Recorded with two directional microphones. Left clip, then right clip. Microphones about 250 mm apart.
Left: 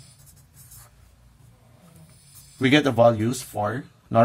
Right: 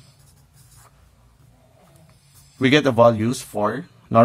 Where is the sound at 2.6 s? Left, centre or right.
Centre.